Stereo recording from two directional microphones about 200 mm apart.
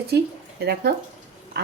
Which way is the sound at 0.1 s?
55° right (ahead or behind).